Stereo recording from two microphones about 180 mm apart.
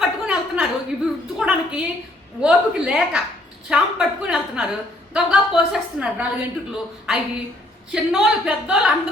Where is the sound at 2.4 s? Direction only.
5° right (ahead or behind).